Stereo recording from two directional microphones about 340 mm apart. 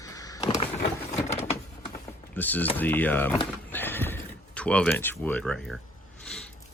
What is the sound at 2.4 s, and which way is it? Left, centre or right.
Speech, centre.